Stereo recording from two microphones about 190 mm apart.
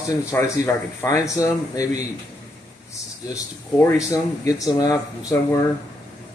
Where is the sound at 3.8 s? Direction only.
20° left (ahead or behind).